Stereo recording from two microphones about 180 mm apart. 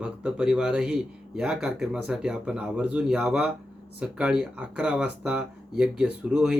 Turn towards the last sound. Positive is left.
turn(degrees=-5)  # may be behind; listen again after turning